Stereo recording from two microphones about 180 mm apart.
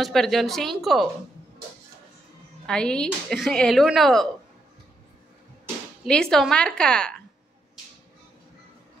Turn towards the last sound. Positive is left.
turn(degrees=5)  # may be behind; listen again after turning